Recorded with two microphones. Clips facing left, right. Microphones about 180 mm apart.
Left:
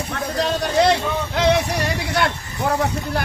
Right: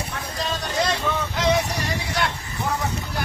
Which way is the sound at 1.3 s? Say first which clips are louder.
Left 5 dB; 65° left (ahead or behind).